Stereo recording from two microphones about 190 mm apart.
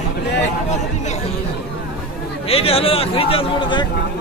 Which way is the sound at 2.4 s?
30° left (ahead or behind).